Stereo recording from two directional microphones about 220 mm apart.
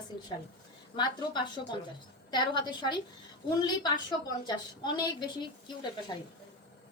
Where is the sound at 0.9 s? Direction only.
20° left (ahead or behind).